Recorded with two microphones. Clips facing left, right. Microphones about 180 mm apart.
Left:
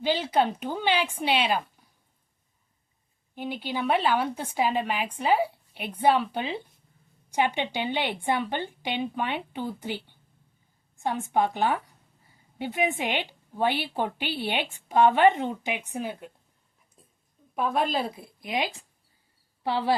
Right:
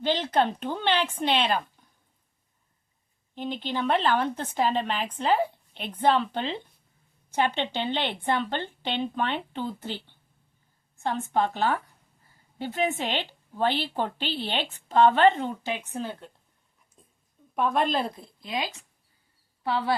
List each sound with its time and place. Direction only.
0.0 s a woman's voice: 10° left (ahead or behind)
3.3 s a woman's voice: 10° left (ahead or behind)
17.0 s a sound: 5° left (ahead or behind)
17.5 s a woman's voice: centre (ahead or behind)
18.4 s a woman's voice: 20° left (ahead or behind)